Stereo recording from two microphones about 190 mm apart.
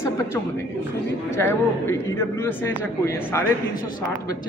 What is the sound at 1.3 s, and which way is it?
A man's voice, 10° left (ahead or behind).